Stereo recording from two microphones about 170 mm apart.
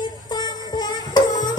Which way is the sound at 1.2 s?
25° left (ahead or behind).